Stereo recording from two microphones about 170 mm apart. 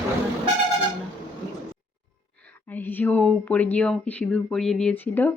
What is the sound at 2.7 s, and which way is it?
Speech, 10° left (ahead or behind).